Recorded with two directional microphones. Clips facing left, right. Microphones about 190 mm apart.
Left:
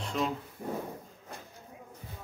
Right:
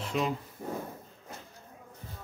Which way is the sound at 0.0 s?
5° right (ahead or behind).